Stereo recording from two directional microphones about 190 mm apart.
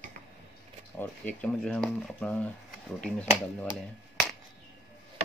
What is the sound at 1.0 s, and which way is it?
Speech, 10° left (ahead or behind).